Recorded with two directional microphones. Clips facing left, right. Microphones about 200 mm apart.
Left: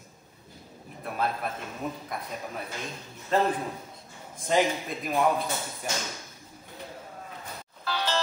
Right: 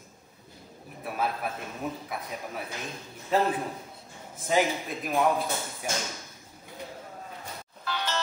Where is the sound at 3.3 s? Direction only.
5° right (ahead or behind).